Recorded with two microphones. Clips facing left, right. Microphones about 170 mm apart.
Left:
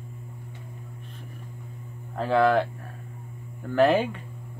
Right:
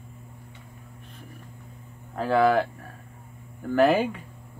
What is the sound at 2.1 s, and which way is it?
Speech, 5° right (ahead or behind).